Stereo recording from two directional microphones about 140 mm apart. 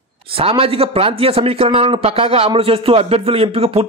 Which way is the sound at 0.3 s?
45° right (ahead or behind).